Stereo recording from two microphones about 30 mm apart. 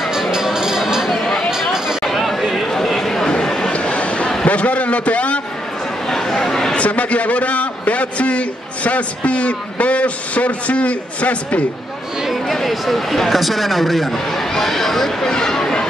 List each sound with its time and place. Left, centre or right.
0.1 s music: centre
1.1 s a sound: centre
2.0 s chatter: centre
2.7 s a sound: centre
3.6 s a sound: left
4.5 s a man's voice: left
6.0 s chatter: centre
6.7 s a man's voice: left
12.6 s a man's voice: centre
14.1 s speech: centre
15.2 s speech: left